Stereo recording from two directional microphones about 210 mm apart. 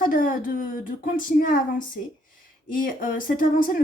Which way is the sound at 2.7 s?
40° left (ahead or behind).